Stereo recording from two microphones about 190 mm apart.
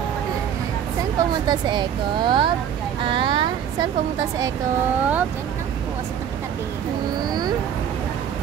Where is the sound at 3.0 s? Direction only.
25° right (ahead or behind).